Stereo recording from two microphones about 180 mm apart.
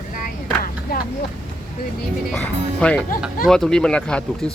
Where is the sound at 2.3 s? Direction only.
5° left (ahead or behind).